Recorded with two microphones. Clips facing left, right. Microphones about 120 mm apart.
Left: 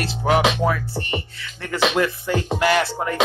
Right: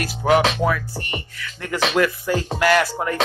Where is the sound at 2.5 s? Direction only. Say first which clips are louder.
Right 2 dB; 25° left (ahead or behind).